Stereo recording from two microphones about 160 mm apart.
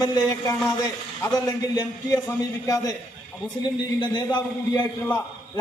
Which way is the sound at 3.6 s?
30° left (ahead or behind).